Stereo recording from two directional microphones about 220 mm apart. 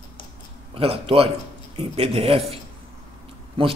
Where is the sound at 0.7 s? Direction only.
25° right (ahead or behind).